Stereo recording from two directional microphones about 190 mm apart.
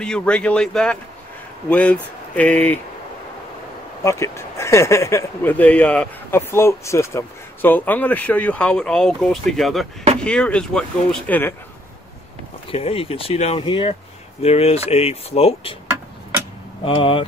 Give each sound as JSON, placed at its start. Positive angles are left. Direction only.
{"t": 0.0, "sound": "speech", "side_deg": 5}
{"t": 4.0, "sound": "speech", "side_deg": 15}
{"t": 12.7, "sound": "speech", "side_deg": 30}
{"t": 16.8, "sound": "speech", "side_deg": 25}